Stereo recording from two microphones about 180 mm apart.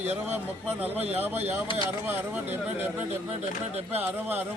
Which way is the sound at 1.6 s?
30° left (ahead or behind).